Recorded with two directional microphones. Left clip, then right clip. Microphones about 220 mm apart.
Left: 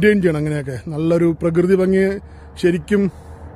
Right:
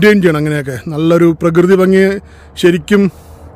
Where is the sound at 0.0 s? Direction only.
45° right (ahead or behind).